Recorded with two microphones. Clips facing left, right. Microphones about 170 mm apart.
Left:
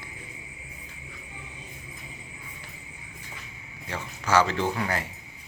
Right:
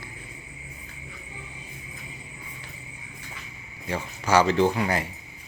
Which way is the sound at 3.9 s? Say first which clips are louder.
Right 3 dB; 15° right (ahead or behind).